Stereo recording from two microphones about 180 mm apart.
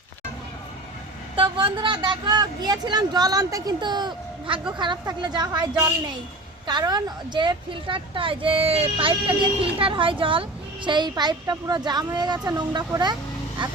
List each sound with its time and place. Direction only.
1.4 s speech: 25° right (ahead or behind)